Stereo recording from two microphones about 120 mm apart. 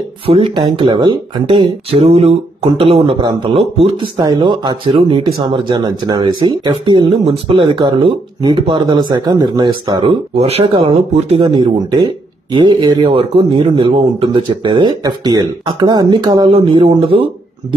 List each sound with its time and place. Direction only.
0.3 s speech: 50° right (ahead or behind)
1.4 s speech: 50° right (ahead or behind)
10.7 s speech: 40° right (ahead or behind)